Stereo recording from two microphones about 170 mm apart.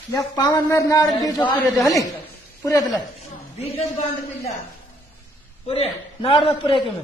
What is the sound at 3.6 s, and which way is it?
Speech, 35° left (ahead or behind).